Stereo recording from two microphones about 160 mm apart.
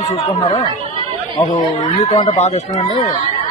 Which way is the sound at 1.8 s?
40° left (ahead or behind).